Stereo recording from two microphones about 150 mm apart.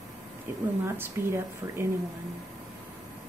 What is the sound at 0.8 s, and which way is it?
Speech, 15° right (ahead or behind).